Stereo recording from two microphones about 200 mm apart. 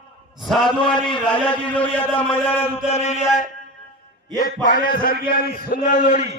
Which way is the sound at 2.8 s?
35° left (ahead or behind).